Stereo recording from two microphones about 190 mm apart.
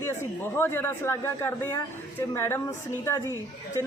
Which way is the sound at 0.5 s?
10° left (ahead or behind).